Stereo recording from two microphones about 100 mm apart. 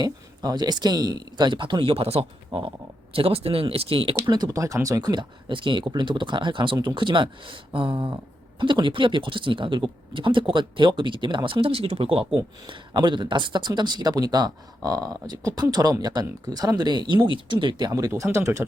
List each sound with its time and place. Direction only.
0.0 s speech: 40° right (ahead or behind); by 4.1 s 65° right (ahead or behind)
4.3 s speech: 40° right (ahead or behind)
5.5 s speech: 55° right (ahead or behind); by 12.2 s 70° right (ahead or behind)
12.6 s speech: 50° right (ahead or behind)
18.1 s speech: 30° right (ahead or behind)